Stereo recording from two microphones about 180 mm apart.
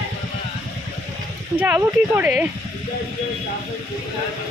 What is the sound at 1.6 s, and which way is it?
Speech, 10° right (ahead or behind).